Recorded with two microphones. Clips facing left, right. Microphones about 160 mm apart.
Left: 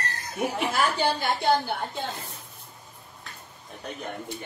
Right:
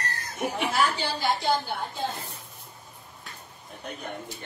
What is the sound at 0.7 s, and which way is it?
A woman's voice, 55° left (ahead or behind).